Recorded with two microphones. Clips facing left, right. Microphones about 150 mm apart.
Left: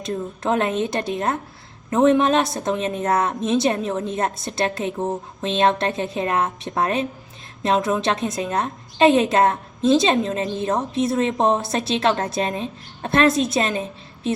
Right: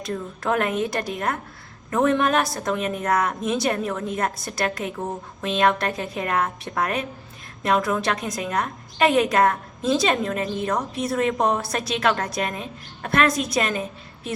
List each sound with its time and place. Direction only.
0.0 s a woman's voice: 25° left (ahead or behind)